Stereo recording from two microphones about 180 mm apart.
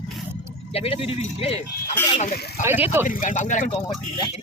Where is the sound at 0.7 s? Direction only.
30° left (ahead or behind).